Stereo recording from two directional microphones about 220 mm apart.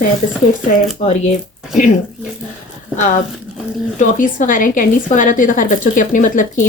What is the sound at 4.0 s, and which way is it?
A woman's voice, 35° left (ahead or behind).